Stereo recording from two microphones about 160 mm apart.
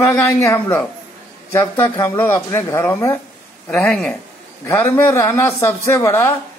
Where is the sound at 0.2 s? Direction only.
15° left (ahead or behind).